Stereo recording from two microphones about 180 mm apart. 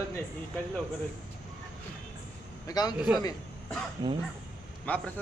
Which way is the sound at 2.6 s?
20° left (ahead or behind).